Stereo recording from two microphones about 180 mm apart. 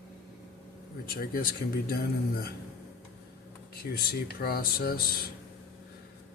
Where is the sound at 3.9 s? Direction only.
60° left (ahead or behind).